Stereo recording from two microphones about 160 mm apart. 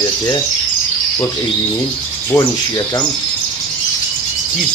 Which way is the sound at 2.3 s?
5° left (ahead or behind).